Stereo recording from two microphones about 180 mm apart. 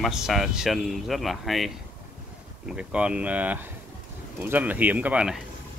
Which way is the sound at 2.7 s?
5° right (ahead or behind).